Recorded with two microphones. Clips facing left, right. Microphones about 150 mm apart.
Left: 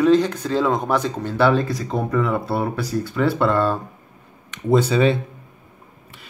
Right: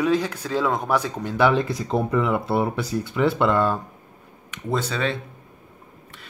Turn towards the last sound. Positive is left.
turn(degrees=10)  # may be behind; listen again after turning